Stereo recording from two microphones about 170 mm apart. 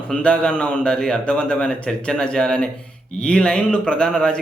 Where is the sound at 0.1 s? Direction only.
5° left (ahead or behind).